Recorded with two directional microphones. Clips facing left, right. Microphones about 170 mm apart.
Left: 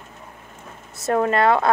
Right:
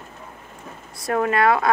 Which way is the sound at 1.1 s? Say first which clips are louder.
Left 1 dB; 30° left (ahead or behind).